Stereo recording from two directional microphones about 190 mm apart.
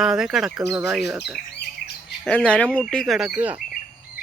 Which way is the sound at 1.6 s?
60° left (ahead or behind).